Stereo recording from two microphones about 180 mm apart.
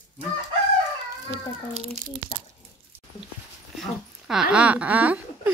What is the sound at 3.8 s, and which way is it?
Speech, 5° right (ahead or behind).